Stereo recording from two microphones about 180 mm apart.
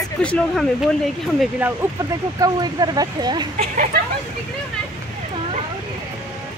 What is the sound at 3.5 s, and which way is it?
Speech, 45° right (ahead or behind).